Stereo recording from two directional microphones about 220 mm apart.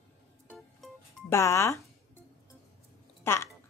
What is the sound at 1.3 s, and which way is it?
Speech, 15° left (ahead or behind).